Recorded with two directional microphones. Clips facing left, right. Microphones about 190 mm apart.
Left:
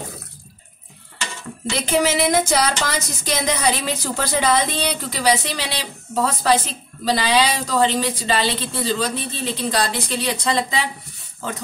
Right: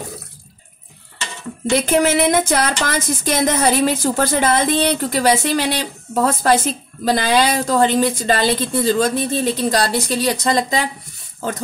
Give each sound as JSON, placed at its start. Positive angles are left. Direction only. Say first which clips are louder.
{"t": 1.9, "sound": "speech", "louder": "right 1 dB", "side_deg": -55}